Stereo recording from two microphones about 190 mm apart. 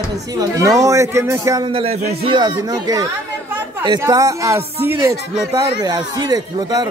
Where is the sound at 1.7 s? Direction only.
30° right (ahead or behind).